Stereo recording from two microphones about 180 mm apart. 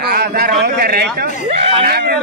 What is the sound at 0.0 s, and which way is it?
A man's voice, 55° right (ahead or behind).